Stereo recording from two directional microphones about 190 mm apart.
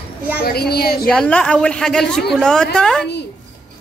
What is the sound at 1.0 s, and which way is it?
A woman's voice, 5° left (ahead or behind).